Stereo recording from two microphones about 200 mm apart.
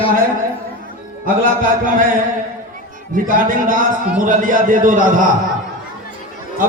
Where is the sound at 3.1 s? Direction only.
45° right (ahead or behind).